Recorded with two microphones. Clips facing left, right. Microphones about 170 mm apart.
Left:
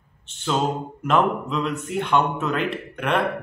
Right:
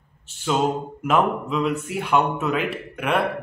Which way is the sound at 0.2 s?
5° right (ahead or behind).